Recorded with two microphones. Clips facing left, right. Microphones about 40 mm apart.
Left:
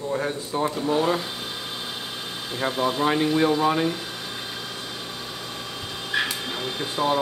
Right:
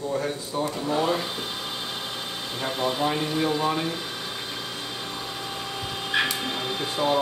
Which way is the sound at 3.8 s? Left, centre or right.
Centre.